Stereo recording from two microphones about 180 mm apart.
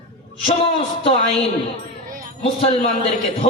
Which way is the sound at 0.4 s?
30° left (ahead or behind).